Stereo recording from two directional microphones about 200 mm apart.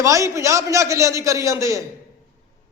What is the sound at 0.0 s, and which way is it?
A man's voice, 15° right (ahead or behind).